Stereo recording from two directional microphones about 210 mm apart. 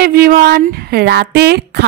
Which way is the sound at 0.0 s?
50° right (ahead or behind).